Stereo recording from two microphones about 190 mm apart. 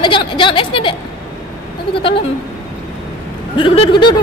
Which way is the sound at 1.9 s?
30° left (ahead or behind).